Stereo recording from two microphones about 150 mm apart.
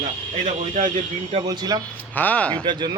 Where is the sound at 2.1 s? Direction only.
10° left (ahead or behind).